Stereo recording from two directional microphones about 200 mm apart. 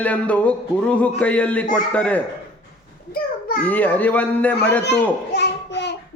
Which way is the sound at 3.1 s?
45° left (ahead or behind).